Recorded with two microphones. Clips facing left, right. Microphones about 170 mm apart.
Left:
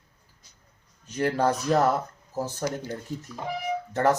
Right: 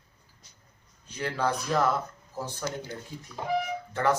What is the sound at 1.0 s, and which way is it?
Speech, 45° left (ahead or behind).